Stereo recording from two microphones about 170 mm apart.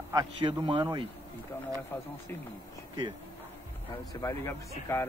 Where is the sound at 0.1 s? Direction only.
25° right (ahead or behind).